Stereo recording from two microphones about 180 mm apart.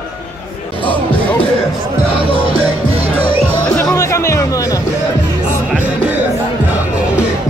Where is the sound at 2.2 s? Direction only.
30° right (ahead or behind).